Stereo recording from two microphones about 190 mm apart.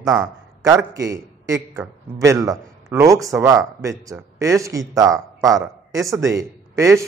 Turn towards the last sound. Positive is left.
turn(degrees=-15)  # may be behind; listen again after turning